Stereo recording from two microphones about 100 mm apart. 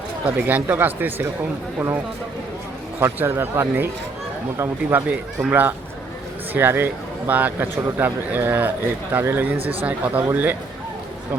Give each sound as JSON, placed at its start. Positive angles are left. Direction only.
{"t": 0.3, "sound": "speech", "side_deg": -15}
{"t": 3.0, "sound": "speech", "side_deg": -25}
{"t": 5.0, "sound": "speech", "side_deg": -15}